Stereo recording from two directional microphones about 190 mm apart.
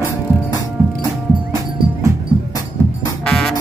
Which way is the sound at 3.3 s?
Centre (ahead or behind).